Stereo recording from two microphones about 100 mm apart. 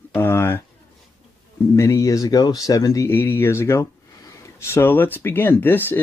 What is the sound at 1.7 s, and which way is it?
Speech, 30° left (ahead or behind).